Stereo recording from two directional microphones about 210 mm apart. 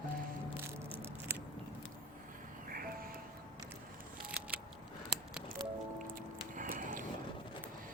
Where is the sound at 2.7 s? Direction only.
45° right (ahead or behind).